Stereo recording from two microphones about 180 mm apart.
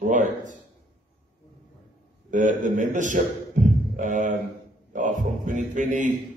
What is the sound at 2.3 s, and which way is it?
A man's voice, 45° right (ahead or behind).